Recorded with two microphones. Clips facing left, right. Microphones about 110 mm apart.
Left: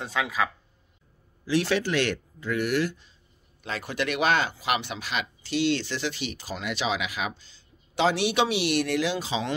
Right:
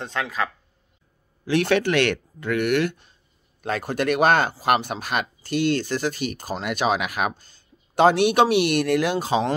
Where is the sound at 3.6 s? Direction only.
50° right (ahead or behind).